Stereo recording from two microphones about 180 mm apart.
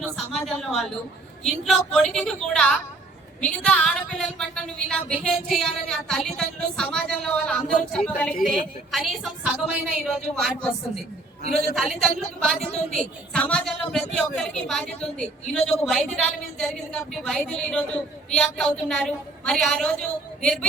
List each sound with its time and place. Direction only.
0.0 s a sound: centre (ahead or behind)
1.5 s a woman's voice: centre (ahead or behind)
11.4 s a woman's voice: 40° left (ahead or behind)
11.7 s a woman's voice: centre (ahead or behind)